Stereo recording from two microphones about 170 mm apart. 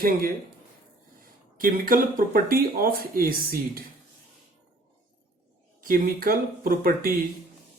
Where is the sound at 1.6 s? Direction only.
55° right (ahead or behind).